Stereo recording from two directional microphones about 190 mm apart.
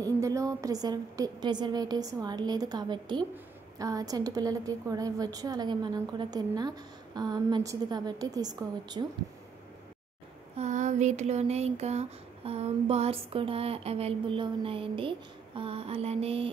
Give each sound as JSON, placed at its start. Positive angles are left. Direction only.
{"t": 0.0, "sound": "a woman's voice", "side_deg": -15}
{"t": 10.5, "sound": "speech", "side_deg": -40}